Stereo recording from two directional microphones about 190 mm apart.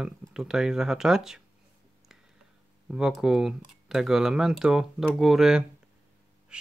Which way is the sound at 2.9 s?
5° right (ahead or behind).